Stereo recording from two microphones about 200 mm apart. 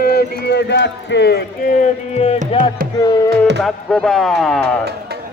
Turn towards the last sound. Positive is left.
turn(degrees=5)  # may be behind; listen again after turning